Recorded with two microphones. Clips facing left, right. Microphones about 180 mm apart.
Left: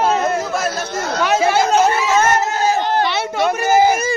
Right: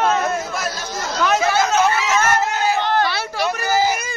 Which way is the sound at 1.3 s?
25° left (ahead or behind).